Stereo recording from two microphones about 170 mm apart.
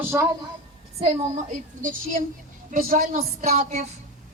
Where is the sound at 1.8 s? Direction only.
55° right (ahead or behind).